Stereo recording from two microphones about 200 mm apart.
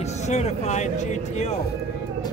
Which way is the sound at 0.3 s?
35° left (ahead or behind).